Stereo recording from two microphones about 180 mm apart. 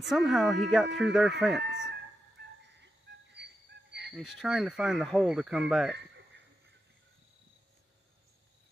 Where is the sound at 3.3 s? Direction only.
70° right (ahead or behind).